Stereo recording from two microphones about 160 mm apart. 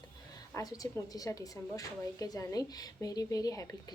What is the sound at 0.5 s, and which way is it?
A woman's voice, 20° left (ahead or behind).